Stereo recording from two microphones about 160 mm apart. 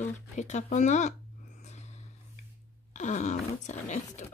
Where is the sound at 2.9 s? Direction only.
50° left (ahead or behind).